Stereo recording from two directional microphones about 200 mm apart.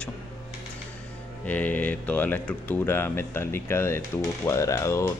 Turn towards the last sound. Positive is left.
turn(degrees=15)  # may be behind; listen again after turning